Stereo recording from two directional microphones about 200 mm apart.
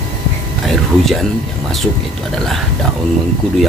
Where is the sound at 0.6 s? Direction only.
Centre (ahead or behind).